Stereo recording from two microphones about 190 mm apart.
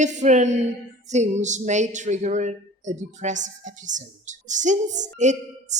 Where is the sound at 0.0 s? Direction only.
40° right (ahead or behind).